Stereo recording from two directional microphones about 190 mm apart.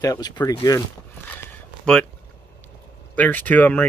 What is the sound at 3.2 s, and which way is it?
Speech, 10° left (ahead or behind).